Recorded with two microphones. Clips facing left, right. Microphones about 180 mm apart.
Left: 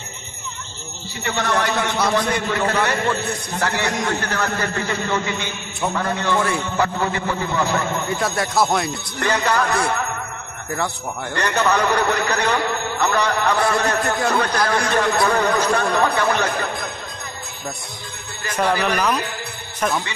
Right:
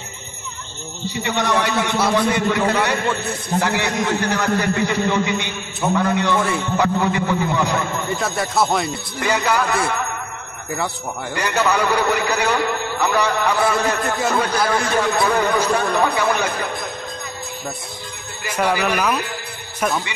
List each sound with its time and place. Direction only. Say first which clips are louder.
1.2 s a man's voice: right 1 dB; 15° right (ahead or behind)
8.2 s speech: even; centre (ahead or behind)
11.3 s a man's voice: even; 10° right (ahead or behind)
18.4 s a man's voice: even; 10° right (ahead or behind)